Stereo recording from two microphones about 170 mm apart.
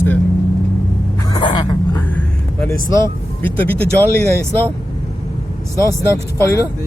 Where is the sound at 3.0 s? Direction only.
10° left (ahead or behind).